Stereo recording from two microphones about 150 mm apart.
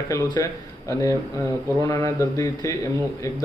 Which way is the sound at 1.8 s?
20° left (ahead or behind).